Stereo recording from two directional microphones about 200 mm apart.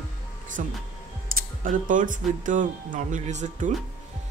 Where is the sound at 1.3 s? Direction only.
45° right (ahead or behind).